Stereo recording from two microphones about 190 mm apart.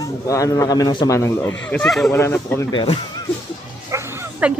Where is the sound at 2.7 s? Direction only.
25° left (ahead or behind).